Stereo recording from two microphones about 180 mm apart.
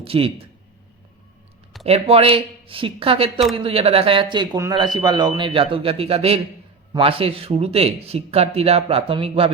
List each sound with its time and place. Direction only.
0.0 s speech: 30° right (ahead or behind)
1.8 s speech: 35° right (ahead or behind)